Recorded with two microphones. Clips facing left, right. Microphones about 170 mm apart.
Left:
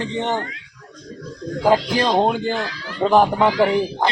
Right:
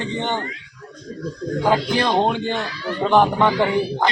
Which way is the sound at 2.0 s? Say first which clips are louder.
Left 1 dB; 10° left (ahead or behind).